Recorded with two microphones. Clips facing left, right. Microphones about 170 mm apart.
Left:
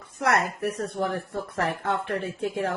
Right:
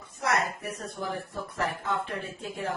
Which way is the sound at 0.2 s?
70° left (ahead or behind).